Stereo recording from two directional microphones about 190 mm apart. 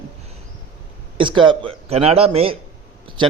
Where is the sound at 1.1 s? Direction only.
25° right (ahead or behind).